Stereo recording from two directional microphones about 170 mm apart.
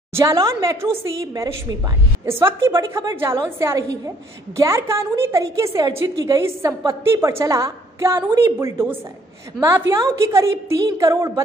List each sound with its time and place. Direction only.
0.1 s a woman's voice: 20° right (ahead or behind)